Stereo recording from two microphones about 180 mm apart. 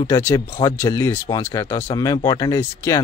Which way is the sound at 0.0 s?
15° left (ahead or behind).